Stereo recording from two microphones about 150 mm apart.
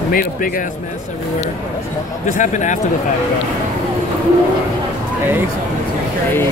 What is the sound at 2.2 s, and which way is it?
Speech, 55° left (ahead or behind).